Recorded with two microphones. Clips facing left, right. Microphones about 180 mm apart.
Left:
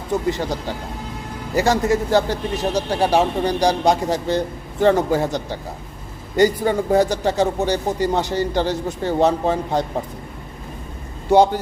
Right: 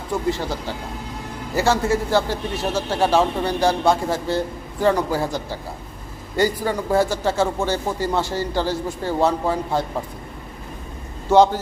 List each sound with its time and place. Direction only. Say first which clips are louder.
0.1 s speech: left 2 dB; 20° left (ahead or behind)
11.3 s speech: even; 15° left (ahead or behind)